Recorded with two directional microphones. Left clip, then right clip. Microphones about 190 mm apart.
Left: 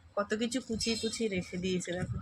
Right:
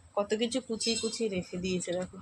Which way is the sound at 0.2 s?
Centre (ahead or behind).